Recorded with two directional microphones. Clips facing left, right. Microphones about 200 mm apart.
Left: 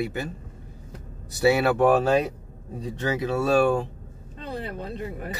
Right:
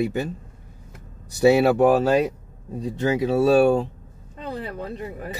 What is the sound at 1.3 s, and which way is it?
Speech, 15° right (ahead or behind).